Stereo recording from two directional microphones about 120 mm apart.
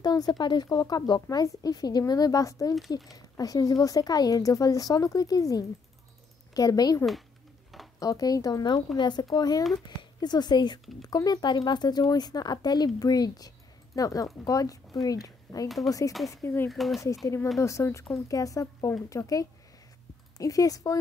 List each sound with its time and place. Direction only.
0.0 s speech: 35° left (ahead or behind)
16.6 s speech: centre (ahead or behind)
17.6 s speech: 25° left (ahead or behind)